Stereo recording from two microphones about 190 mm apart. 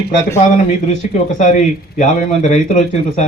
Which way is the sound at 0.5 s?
40° left (ahead or behind).